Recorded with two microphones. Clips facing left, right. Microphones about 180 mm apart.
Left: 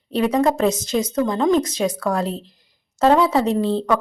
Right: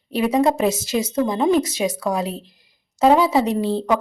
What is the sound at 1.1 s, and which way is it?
Speech, 25° right (ahead or behind).